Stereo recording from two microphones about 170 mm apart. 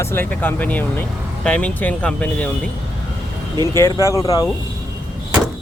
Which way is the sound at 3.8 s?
15° left (ahead or behind).